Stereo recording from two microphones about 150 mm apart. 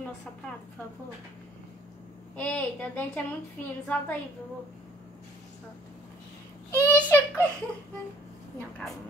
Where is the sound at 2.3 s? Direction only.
10° left (ahead or behind).